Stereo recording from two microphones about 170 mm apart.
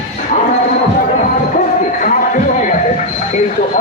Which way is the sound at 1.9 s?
50° left (ahead or behind).